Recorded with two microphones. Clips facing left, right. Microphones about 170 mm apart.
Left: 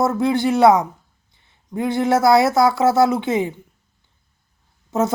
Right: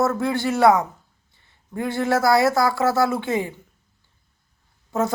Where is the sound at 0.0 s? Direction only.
20° left (ahead or behind).